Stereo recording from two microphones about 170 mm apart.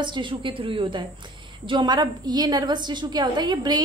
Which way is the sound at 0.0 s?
30° right (ahead or behind).